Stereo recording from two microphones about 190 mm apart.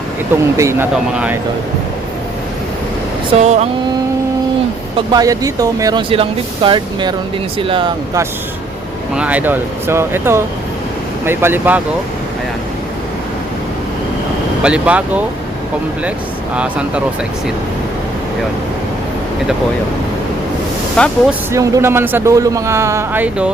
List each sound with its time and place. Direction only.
0.5 s speech: 15° right (ahead or behind)
3.3 s a sound: 35° right (ahead or behind)
4.9 s speech: 20° right (ahead or behind)
9.1 s speech: 5° right (ahead or behind)
14.6 s speech: 5° right (ahead or behind)
16.6 s speech: 5° right (ahead or behind)
20.9 s speech: 5° left (ahead or behind)
21.5 s speech: 15° right (ahead or behind)